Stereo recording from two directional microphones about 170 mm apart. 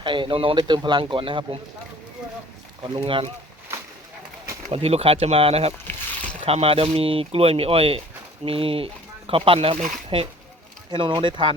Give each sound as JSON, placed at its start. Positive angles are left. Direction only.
{"t": 0.0, "sound": "speech", "side_deg": -30}
{"t": 2.8, "sound": "speech", "side_deg": -30}
{"t": 4.7, "sound": "speech", "side_deg": -35}